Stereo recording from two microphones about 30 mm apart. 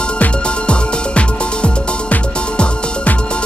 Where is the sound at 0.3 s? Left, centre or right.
Left.